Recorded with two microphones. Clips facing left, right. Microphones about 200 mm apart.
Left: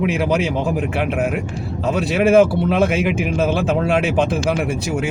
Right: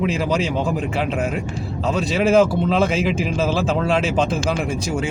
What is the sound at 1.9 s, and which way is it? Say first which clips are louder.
Speech: left 3 dB; 60° left (ahead or behind).